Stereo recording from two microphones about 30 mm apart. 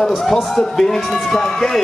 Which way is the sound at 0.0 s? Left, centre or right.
Centre.